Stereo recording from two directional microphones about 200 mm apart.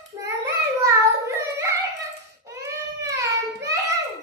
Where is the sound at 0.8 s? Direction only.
15° right (ahead or behind).